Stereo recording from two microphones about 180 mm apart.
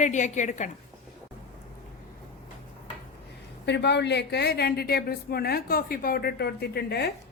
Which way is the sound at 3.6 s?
70° left (ahead or behind).